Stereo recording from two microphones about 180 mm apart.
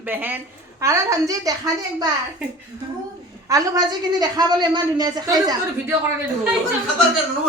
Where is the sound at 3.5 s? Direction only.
20° right (ahead or behind).